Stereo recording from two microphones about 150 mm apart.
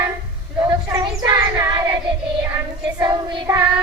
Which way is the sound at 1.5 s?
25° right (ahead or behind).